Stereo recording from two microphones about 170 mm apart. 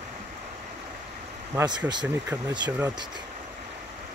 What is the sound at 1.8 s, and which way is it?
Speech, 10° right (ahead or behind).